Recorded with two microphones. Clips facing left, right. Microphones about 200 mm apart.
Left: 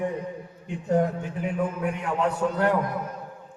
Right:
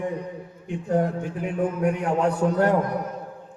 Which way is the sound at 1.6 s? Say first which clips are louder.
Right 6 dB; 50° right (ahead or behind).